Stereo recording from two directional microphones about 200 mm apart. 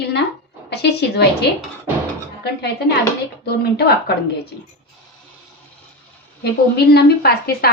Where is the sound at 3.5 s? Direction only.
55° left (ahead or behind).